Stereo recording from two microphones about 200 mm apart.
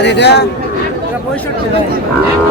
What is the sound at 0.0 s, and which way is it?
Speech, 55° left (ahead or behind).